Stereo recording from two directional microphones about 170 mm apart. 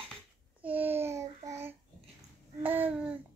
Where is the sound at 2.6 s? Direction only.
10° right (ahead or behind).